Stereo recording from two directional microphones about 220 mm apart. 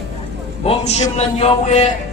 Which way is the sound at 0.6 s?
30° left (ahead or behind).